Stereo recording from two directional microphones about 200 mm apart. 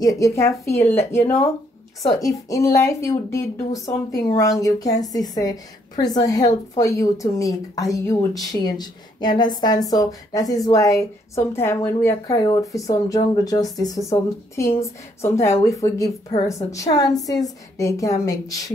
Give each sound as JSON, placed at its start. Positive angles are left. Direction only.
{"t": 0.0, "sound": "a woman's voice", "side_deg": 15}